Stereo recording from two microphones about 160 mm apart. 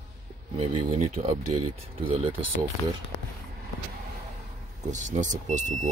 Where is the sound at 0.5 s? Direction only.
40° right (ahead or behind).